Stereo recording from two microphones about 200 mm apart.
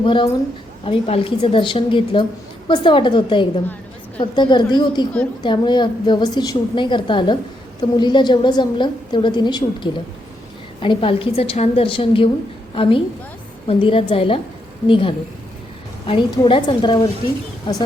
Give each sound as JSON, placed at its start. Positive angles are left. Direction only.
{"t": 0.0, "sound": "a woman's voice", "side_deg": 25}